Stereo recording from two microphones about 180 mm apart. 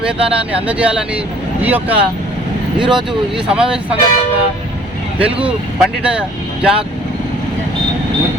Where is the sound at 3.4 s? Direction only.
5° right (ahead or behind).